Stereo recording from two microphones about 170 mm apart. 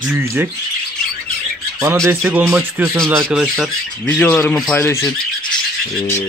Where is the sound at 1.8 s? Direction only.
15° right (ahead or behind); by 4.8 s 5° left (ahead or behind).